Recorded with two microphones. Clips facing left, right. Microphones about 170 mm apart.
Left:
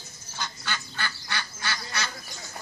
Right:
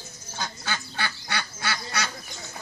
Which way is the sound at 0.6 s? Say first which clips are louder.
Right 3 dB; 55° right (ahead or behind).